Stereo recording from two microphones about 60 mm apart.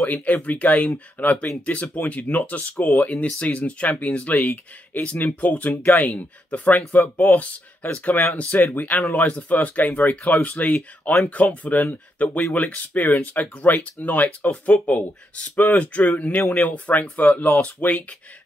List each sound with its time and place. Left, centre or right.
0.0 s speech: left
16.4 s speech: left